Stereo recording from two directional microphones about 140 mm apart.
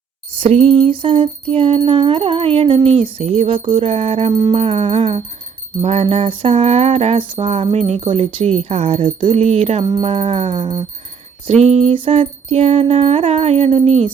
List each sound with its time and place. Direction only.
0.3 s jingle bell: 50° right (ahead or behind)
1.9 s music: 40° right (ahead or behind)
3.8 s jingle bell: 45° right (ahead or behind)
4.3 s music: 30° right (ahead or behind)
4.5 s jingle bell: 45° right (ahead or behind)